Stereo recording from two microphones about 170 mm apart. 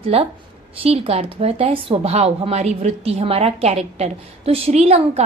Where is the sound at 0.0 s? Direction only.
35° right (ahead or behind).